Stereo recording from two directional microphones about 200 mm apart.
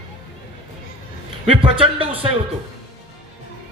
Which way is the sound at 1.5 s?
25° right (ahead or behind).